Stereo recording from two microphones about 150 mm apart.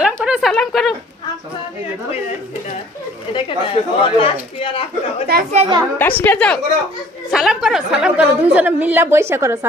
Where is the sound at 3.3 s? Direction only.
35° left (ahead or behind).